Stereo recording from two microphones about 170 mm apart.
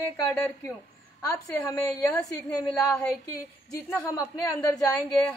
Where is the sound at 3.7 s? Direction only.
20° left (ahead or behind).